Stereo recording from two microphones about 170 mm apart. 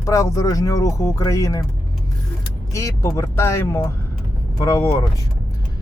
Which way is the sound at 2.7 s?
20° left (ahead or behind).